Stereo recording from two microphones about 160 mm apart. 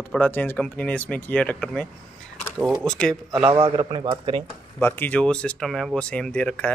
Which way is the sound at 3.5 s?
35° right (ahead or behind).